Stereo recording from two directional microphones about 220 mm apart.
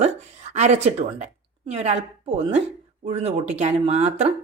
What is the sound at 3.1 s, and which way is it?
Speech, 30° right (ahead or behind).